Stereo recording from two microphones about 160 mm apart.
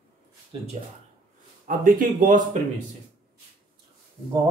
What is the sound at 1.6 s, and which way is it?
Speech, 60° right (ahead or behind).